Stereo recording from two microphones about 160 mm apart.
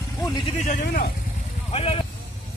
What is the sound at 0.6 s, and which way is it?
Speech, 55° left (ahead or behind).